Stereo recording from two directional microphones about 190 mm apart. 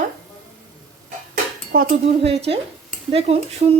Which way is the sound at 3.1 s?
30° right (ahead or behind).